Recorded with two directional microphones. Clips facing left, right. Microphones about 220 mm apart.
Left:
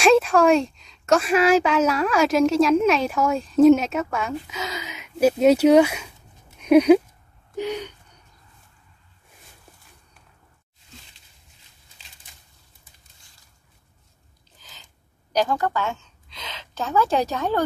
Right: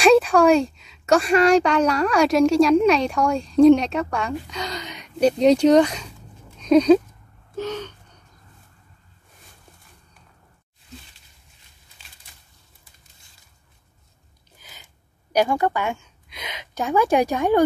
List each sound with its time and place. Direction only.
0.0 s speech: centre (ahead or behind)
7.5 s gasp: 15° left (ahead or behind)
14.6 s a sound: 10° right (ahead or behind)
15.3 s a woman's voice: 10° right (ahead or behind)